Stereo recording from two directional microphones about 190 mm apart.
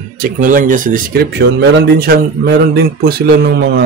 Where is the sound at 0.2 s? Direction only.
45° right (ahead or behind).